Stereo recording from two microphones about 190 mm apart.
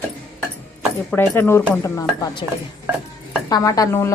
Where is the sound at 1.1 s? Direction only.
10° left (ahead or behind).